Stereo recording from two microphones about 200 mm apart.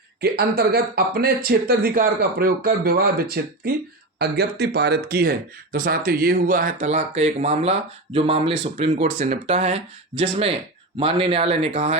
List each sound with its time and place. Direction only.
0.2 s speech: 50° right (ahead or behind); by 11.9 s 30° right (ahead or behind)